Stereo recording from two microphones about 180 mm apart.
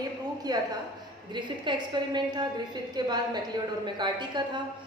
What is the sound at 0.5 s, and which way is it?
A woman's voice, 20° right (ahead or behind).